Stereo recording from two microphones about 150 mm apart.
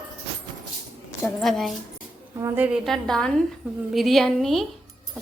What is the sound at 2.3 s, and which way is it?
Speech, 20° right (ahead or behind).